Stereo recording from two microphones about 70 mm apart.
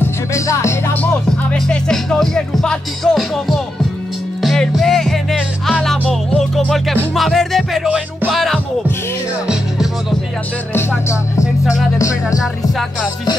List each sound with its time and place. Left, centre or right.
0.3 s music: left
1.0 s music: centre
1.9 s music: centre
3.2 s music: centre
6.5 s music: centre
10.7 s music: left
12.0 s music: left